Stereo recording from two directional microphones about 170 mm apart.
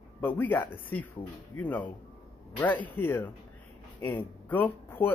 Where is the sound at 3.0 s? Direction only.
15° left (ahead or behind).